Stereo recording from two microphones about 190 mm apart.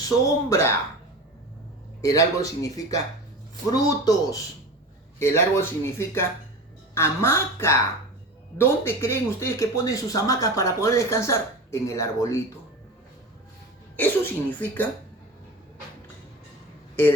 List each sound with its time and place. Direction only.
0.3 s speech: 15° left (ahead or behind)
2.0 s speech: 15° left (ahead or behind)
13.9 s speech: 10° left (ahead or behind)